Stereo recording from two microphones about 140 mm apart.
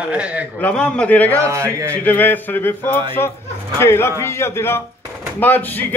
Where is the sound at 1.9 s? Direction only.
10° left (ahead or behind).